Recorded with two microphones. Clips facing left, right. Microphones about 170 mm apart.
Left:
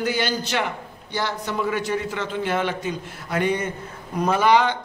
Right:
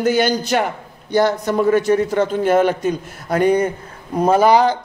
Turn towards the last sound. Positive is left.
turn(degrees=-40)  # may be behind; listen again after turning